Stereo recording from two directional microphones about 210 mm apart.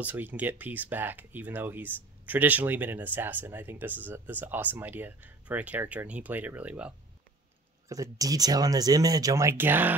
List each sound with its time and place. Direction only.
0.0 s speech: 10° right (ahead or behind)
7.9 s speech: 15° right (ahead or behind)